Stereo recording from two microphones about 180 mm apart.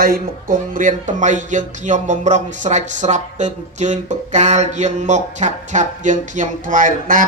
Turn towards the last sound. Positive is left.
turn(degrees=-50)  # may be behind; listen again after turning